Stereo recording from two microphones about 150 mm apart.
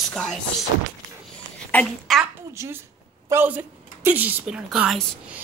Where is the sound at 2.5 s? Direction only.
20° right (ahead or behind).